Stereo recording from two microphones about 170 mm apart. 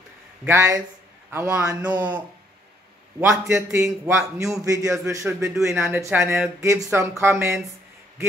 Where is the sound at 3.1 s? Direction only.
15° right (ahead or behind).